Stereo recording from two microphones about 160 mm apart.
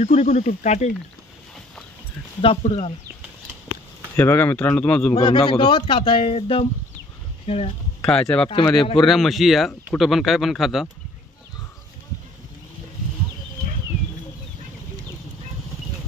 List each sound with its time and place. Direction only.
0.0 s speech: 45° left (ahead or behind)
2.4 s a man's voice: 40° left (ahead or behind)
4.2 s speech: 15° left (ahead or behind)
5.1 s a man's voice: 30° left (ahead or behind)
8.1 s speech: 5° left (ahead or behind)
8.5 s speech: 30° left (ahead or behind)
9.0 s speech: centre (ahead or behind)